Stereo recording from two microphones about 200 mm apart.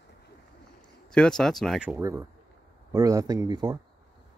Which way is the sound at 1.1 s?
5° left (ahead or behind).